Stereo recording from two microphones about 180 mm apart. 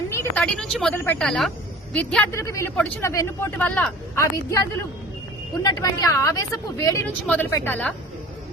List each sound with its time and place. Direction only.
0.3 s a woman's voice: 5° left (ahead or behind)